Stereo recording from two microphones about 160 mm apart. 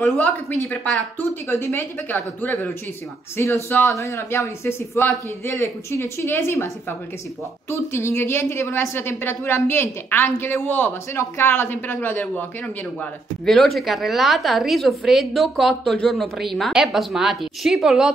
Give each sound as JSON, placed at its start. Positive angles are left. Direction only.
{"t": 0.0, "sound": "a woman's voice", "side_deg": 5}
{"t": 1.5, "sound": "speech", "side_deg": 15}
{"t": 13.5, "sound": "a woman's voice", "side_deg": 0}